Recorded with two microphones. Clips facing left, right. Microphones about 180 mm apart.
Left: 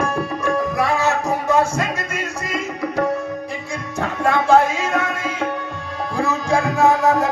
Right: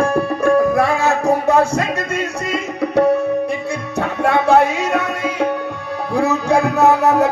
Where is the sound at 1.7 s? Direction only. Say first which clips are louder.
Right 4 dB; 65° right (ahead or behind).